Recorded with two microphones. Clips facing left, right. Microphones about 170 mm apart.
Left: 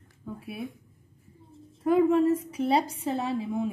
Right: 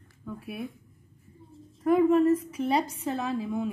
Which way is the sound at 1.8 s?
30° left (ahead or behind).